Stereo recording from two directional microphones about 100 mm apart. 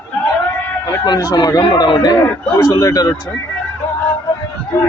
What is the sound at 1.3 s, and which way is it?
A man's voice, 45° left (ahead or behind).